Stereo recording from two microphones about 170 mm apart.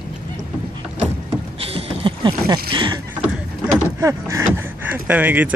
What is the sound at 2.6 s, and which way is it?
Speech, 30° right (ahead or behind).